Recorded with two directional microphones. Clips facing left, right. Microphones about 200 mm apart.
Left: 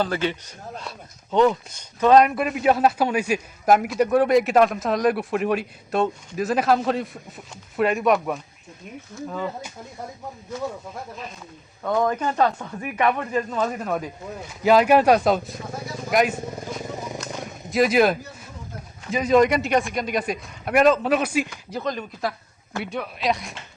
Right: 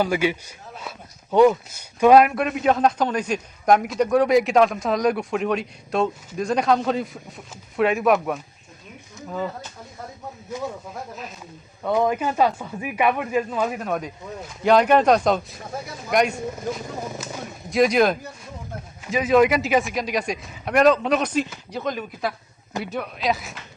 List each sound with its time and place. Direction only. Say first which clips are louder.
0.0 s speech: right 3 dB; 10° right (ahead or behind)
10.5 s speech: even; 15° right (ahead or behind)
11.8 s speech: right 1 dB; 10° right (ahead or behind)
17.7 s speech: even; centre (ahead or behind)